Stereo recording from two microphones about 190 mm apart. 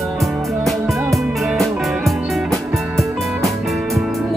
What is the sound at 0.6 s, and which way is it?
Music, centre (ahead or behind).